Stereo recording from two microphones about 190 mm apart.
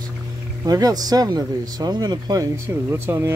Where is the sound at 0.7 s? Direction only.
20° right (ahead or behind).